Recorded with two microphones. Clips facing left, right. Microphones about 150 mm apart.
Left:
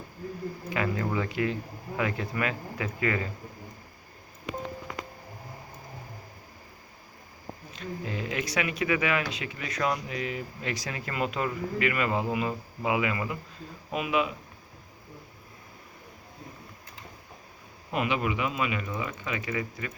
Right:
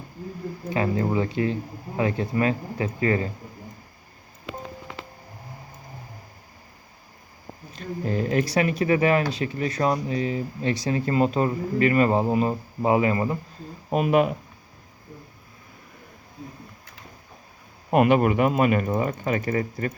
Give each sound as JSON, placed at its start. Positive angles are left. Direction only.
{"t": 0.7, "sound": "speech", "side_deg": -30}
{"t": 7.7, "sound": "speech", "side_deg": -40}
{"t": 17.9, "sound": "speech", "side_deg": -50}